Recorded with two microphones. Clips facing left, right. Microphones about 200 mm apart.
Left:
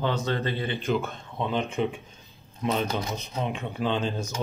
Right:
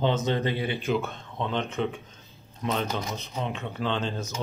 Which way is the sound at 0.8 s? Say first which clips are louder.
Even; centre (ahead or behind).